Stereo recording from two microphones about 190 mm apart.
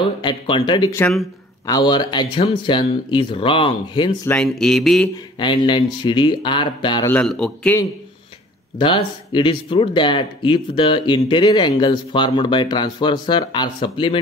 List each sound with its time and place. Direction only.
0.0 s speech: 25° left (ahead or behind)
4.3 s speech: 5° left (ahead or behind)
5.4 s speech: 25° left (ahead or behind)
7.1 s speech: 5° left (ahead or behind)
8.7 s speech: 25° left (ahead or behind)